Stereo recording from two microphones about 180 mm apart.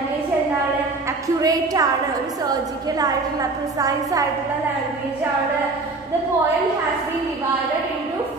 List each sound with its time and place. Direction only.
1.4 s a woman's voice: 20° right (ahead or behind)
3.8 s a woman's voice: 20° right (ahead or behind)